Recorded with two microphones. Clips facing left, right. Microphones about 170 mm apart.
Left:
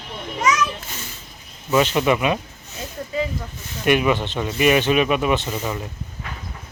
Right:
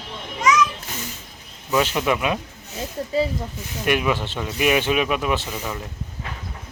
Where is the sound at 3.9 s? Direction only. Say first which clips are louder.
Left 3 dB; centre (ahead or behind).